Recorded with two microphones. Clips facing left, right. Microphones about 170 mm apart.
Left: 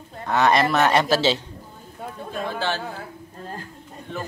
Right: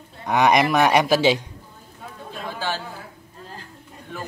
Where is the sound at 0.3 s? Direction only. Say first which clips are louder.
Right 1 dB; 15° right (ahead or behind).